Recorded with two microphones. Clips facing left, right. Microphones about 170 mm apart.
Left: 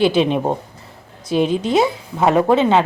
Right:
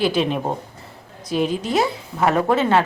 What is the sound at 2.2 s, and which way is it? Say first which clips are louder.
Speech: left 4 dB; 20° left (ahead or behind).